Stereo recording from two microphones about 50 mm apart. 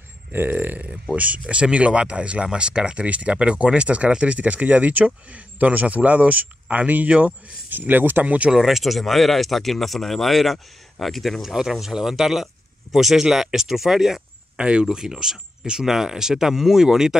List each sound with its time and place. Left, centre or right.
0.3 s speech: right
1.1 s speech: right
8.2 s speech: right
8.5 s speech: centre